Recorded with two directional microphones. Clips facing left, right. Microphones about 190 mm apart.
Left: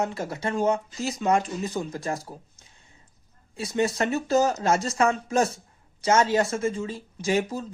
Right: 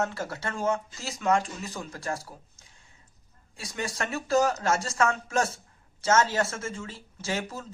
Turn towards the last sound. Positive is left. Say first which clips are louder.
# left 7 dB
turn(degrees=15)  # may be behind; listen again after turning